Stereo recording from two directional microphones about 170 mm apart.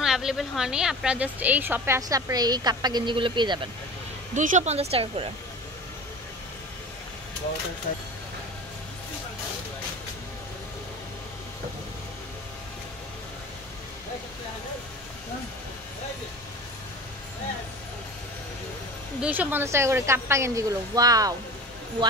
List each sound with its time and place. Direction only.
0.0 s speech: 5° right (ahead or behind); by 3.6 s 30° right (ahead or behind)
4.3 s speech: 45° right (ahead or behind)
19.2 s speech: 10° right (ahead or behind)